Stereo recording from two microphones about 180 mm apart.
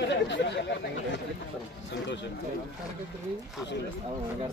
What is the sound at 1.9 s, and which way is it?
Speech, 80° left.